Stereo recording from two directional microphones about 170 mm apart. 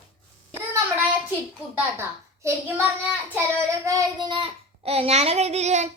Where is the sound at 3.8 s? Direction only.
25° right (ahead or behind); by 5.9 s 40° right (ahead or behind).